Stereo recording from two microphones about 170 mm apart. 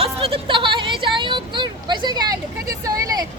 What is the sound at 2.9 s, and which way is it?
Vehicle, 20° right (ahead or behind).